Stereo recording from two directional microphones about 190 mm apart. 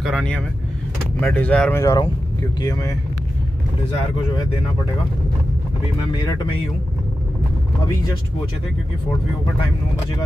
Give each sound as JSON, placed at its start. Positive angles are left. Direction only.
{"t": 0.0, "sound": "speech", "side_deg": 5}